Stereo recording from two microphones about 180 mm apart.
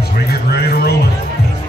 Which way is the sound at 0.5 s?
60° left (ahead or behind).